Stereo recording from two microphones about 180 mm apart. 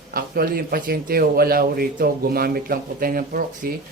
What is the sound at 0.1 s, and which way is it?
Speech, 55° right (ahead or behind).